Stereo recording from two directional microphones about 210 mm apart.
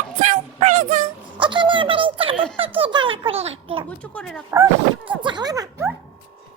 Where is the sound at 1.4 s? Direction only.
25° right (ahead or behind).